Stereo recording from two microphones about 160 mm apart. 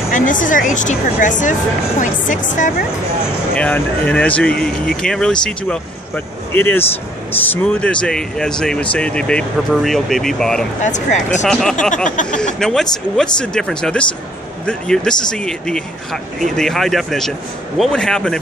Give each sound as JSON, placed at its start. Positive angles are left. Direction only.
{"t": 0.1, "sound": "speech", "side_deg": 55}
{"t": 3.5, "sound": "speech", "side_deg": 10}
{"t": 10.8, "sound": "speech", "side_deg": 50}
{"t": 11.4, "sound": "speech", "side_deg": 5}